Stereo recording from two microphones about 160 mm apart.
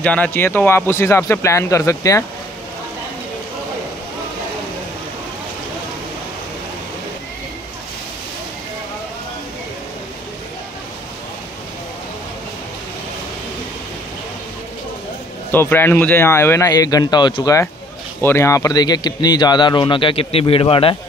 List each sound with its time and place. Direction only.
0.0 s speech: 10° left (ahead or behind)
15.5 s speech: 15° left (ahead or behind); by 20.9 s 35° left (ahead or behind)